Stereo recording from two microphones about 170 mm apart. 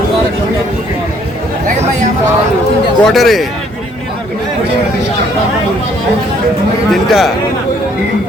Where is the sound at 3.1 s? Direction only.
Centre (ahead or behind).